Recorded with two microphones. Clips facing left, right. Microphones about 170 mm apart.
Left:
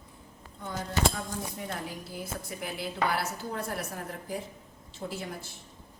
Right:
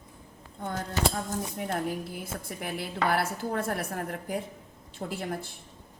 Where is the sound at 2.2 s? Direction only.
55° right (ahead or behind).